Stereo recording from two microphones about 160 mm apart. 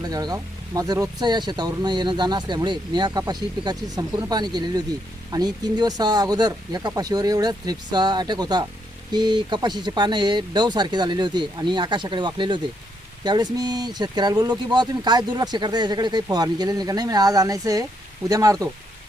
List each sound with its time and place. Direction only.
0.0 s speech: 25° right (ahead or behind)